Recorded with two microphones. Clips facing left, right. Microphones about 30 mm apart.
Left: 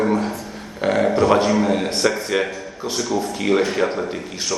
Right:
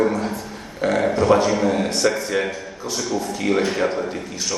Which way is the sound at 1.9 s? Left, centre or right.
Left.